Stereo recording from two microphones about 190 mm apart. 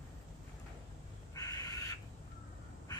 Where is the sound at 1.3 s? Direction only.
20° left (ahead or behind).